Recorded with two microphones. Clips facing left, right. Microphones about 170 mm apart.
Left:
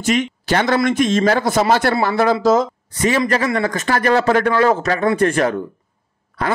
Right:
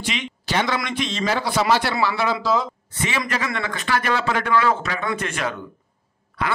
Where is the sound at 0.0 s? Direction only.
45° left (ahead or behind).